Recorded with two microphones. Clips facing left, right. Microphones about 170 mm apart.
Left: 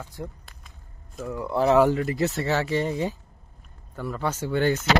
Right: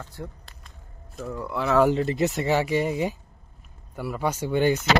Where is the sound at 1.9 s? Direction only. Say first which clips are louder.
Right 1 dB; 25° right (ahead or behind).